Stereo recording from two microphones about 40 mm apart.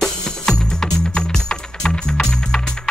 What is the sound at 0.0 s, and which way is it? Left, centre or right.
Music, centre.